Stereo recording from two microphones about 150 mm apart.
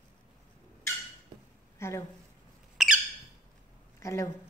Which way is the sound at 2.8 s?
Centre (ahead or behind).